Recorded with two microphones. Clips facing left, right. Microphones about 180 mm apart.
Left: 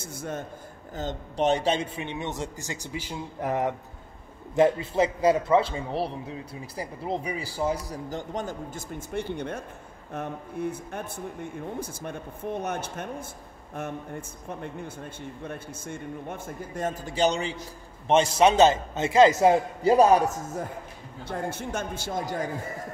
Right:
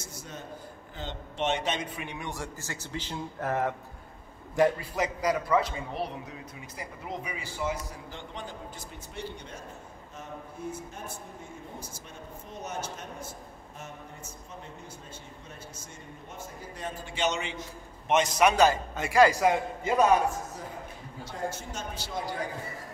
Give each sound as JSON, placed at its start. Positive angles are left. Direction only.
{"t": 0.0, "sound": "a man's voice", "side_deg": 55}
{"t": 0.9, "sound": "a man's voice", "side_deg": 40}
{"t": 21.2, "sound": "speech", "side_deg": 55}